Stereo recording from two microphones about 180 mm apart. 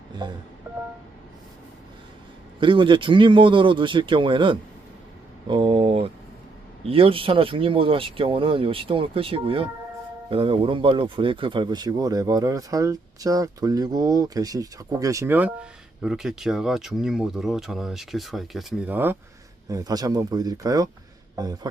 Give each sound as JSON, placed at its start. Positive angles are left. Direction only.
{"t": 0.2, "sound": "speech", "side_deg": -25}
{"t": 2.6, "sound": "speech", "side_deg": -25}